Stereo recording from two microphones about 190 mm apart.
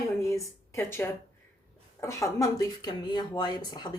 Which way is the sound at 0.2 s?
15° left (ahead or behind).